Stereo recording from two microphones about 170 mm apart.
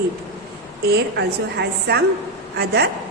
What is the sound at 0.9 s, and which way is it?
A woman's voice, 75° right (ahead or behind).